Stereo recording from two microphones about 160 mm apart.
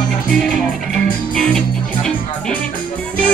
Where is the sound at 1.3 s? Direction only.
5° left (ahead or behind).